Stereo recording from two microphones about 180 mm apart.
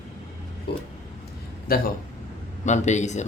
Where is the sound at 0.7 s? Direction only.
65° left (ahead or behind).